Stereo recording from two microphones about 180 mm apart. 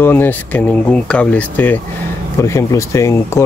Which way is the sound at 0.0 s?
10° left (ahead or behind).